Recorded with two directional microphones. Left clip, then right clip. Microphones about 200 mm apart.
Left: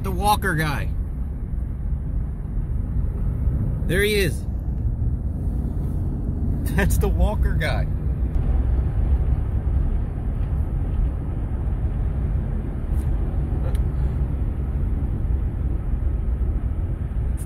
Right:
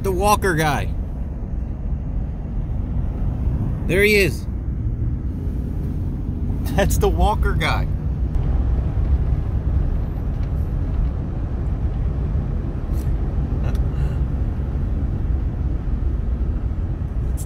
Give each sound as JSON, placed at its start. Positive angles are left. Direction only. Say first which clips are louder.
{"t": 0.0, "sound": "speech", "louder": "right 3 dB", "side_deg": -15}
{"t": 3.8, "sound": "speech", "louder": "right 5 dB", "side_deg": -15}
{"t": 6.7, "sound": "speech", "louder": "right 6 dB", "side_deg": -15}